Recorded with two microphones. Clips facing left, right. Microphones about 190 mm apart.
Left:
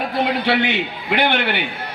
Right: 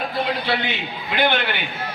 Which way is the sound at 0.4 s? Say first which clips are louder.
Left 5 dB; 65° left (ahead or behind).